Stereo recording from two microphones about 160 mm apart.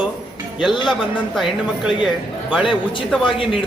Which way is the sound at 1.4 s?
5° right (ahead or behind).